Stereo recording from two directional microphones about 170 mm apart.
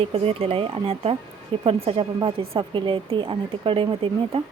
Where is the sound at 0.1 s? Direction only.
35° right (ahead or behind).